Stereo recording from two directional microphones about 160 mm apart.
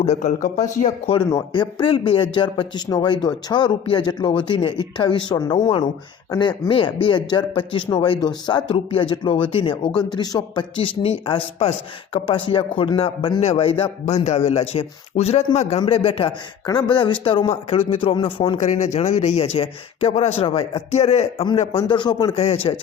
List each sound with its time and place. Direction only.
0.0 s a man's voice: 45° left (ahead or behind)
1.3 s a man's voice: 25° left (ahead or behind)
18.6 s a man's voice: 50° left (ahead or behind); by 22.8 s 30° left (ahead or behind)